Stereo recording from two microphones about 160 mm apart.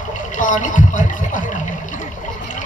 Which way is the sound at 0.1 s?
55° left (ahead or behind).